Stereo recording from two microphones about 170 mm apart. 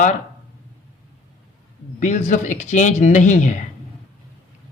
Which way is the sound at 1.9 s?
50° left (ahead or behind).